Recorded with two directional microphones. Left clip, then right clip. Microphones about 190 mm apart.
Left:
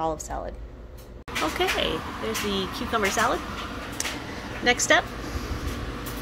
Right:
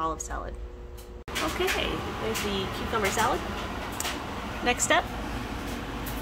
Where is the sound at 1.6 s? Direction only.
25° left (ahead or behind).